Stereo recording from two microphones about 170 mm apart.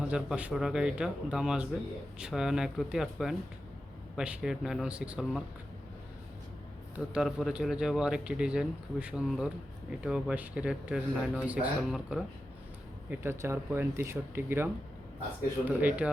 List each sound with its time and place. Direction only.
0.0 s a man's voice: 5° right (ahead or behind)
6.9 s a man's voice: 5° right (ahead or behind)
13.1 s speech: 15° right (ahead or behind)